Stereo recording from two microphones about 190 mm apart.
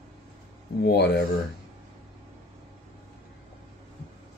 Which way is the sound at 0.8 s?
60° left (ahead or behind).